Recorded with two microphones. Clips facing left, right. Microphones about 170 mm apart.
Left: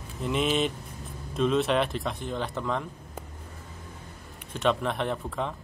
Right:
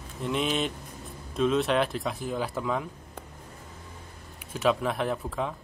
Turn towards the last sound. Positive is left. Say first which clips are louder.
# right 1 dB
turn(degrees=0)  # may be behind; listen again after turning